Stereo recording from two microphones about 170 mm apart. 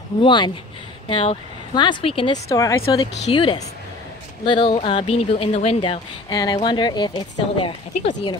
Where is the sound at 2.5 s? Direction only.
20° left (ahead or behind).